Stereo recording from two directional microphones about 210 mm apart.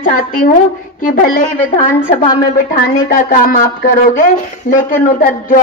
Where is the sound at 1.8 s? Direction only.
40° left (ahead or behind).